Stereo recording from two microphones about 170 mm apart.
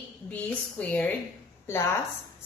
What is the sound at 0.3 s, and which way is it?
Speech, 10° left (ahead or behind).